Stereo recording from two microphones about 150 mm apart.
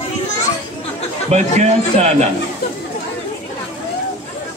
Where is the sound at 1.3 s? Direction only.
45° right (ahead or behind).